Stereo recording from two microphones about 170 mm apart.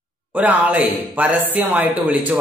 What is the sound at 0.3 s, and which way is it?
Speech, 10° right (ahead or behind).